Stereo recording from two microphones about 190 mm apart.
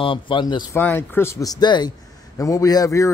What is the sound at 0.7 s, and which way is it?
A man's voice, 10° left (ahead or behind).